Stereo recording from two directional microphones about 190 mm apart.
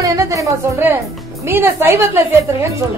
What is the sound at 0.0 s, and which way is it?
Music, 15° right (ahead or behind).